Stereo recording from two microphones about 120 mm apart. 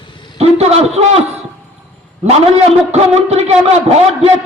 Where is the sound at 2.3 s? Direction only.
65° right (ahead or behind).